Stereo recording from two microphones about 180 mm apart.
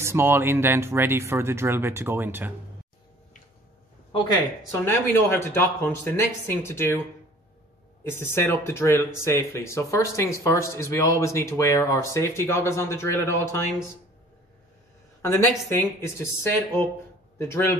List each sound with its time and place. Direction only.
0.0 s speech: 15° right (ahead or behind)
4.6 s speech: 15° left (ahead or behind)
8.0 s speech: 15° left (ahead or behind)
15.7 s speech: 15° left (ahead or behind)